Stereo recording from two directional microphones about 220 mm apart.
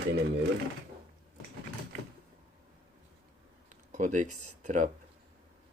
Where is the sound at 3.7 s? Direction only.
35° right (ahead or behind).